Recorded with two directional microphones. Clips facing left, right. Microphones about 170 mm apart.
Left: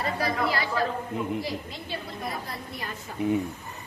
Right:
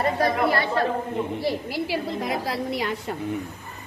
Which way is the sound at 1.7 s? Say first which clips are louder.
Right 10 dB; 90° right.